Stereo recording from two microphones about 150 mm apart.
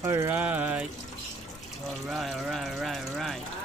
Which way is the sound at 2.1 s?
Centre (ahead or behind).